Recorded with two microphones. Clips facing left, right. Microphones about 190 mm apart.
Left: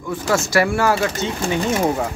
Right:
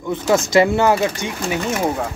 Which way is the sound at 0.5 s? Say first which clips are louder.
Right 3 dB; 20° right (ahead or behind).